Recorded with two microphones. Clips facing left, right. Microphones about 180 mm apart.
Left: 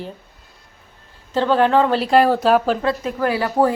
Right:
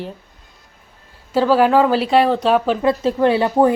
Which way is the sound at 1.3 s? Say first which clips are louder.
Right 2 dB; 5° right (ahead or behind).